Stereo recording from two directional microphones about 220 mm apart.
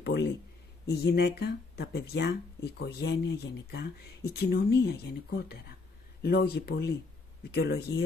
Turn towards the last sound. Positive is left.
turn(degrees=50)  # may be behind; listen again after turning